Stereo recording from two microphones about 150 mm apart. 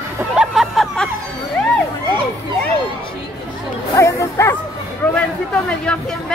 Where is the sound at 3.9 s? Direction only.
20° left (ahead or behind).